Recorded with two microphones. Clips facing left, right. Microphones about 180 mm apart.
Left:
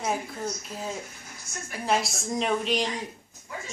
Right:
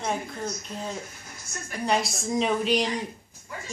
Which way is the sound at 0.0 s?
5° left (ahead or behind).